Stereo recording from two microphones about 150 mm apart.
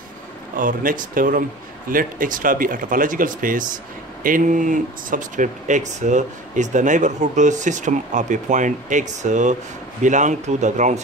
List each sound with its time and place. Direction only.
0.6 s speech: 65° right (ahead or behind)